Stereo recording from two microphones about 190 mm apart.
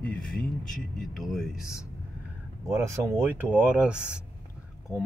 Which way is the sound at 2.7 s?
15° right (ahead or behind).